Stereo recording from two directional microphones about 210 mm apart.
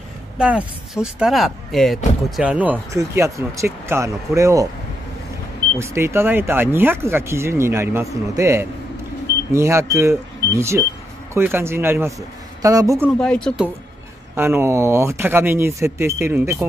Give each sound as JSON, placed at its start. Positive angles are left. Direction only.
{"t": 0.4, "sound": "speech", "side_deg": -5}
{"t": 5.8, "sound": "speech", "side_deg": -10}
{"t": 13.0, "sound": "speech", "side_deg": 5}
{"t": 14.3, "sound": "speech", "side_deg": -10}